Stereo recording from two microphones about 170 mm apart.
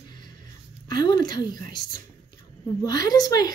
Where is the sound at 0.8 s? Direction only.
25° left (ahead or behind).